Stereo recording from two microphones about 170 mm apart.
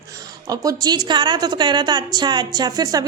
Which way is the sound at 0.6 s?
20° right (ahead or behind).